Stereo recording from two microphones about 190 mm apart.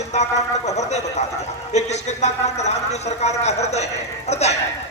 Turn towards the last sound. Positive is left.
turn(degrees=35)  # may be behind; listen again after turning